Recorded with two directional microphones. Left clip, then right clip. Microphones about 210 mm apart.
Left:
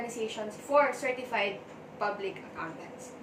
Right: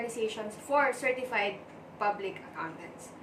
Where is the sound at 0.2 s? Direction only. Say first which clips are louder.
Right 1 dB; 20° right (ahead or behind).